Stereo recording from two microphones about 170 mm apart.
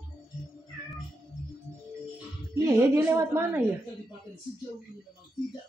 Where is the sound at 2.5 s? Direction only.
15° right (ahead or behind).